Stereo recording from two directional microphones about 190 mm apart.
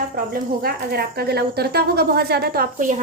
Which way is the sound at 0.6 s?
55° right (ahead or behind).